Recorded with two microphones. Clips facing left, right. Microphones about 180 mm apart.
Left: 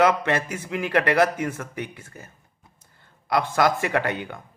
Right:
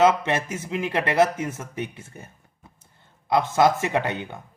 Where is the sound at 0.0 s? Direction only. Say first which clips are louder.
Right 1 dB; 20° right (ahead or behind).